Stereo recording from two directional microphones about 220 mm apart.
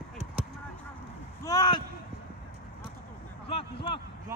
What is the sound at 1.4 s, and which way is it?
Speech, 20° left (ahead or behind).